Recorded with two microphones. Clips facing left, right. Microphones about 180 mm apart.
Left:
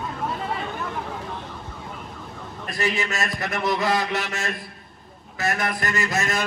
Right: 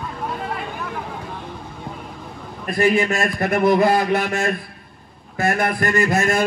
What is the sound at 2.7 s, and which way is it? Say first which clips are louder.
A man's voice: right 9 dB; 55° right (ahead or behind).